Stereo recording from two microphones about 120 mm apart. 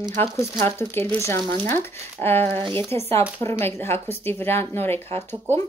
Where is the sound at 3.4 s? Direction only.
20° left (ahead or behind).